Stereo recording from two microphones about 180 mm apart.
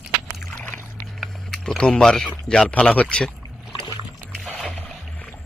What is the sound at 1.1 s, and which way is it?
Speech, 5° left (ahead or behind).